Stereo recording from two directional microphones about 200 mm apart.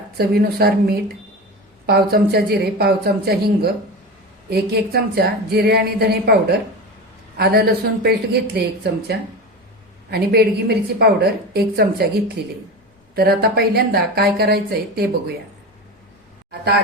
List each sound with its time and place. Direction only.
0.2 s speech: 50° right (ahead or behind)
13.1 s speech: 50° right (ahead or behind)